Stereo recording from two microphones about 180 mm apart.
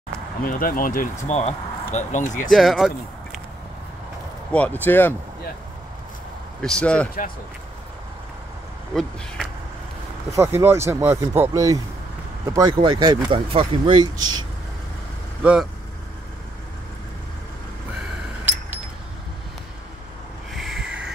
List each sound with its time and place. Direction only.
0.4 s speech: 55° left (ahead or behind)
2.5 s speech: centre (ahead or behind)
4.5 s speech: 10° left (ahead or behind)
6.6 s speech: 5° left (ahead or behind)
10.3 s speech: 15° right (ahead or behind)
15.4 s speech: 5° right (ahead or behind)
20.5 s a sound: centre (ahead or behind)